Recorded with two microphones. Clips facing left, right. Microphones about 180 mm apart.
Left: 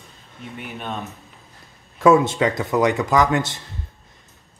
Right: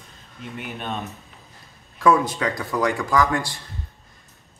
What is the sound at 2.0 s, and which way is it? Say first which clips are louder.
A man's voice: left 4 dB; 25° left (ahead or behind).